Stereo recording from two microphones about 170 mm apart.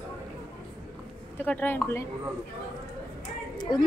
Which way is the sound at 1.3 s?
10° left (ahead or behind).